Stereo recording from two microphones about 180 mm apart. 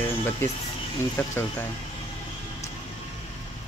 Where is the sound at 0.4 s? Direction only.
15° left (ahead or behind).